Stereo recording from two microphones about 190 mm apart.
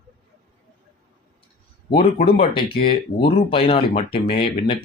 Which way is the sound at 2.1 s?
30° left (ahead or behind).